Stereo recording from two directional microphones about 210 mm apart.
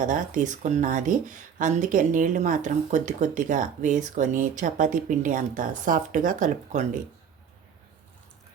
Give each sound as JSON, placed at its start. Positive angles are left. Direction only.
{"t": 0.0, "sound": "speech", "side_deg": -35}